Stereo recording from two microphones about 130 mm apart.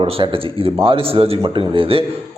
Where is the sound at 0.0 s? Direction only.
45° right (ahead or behind).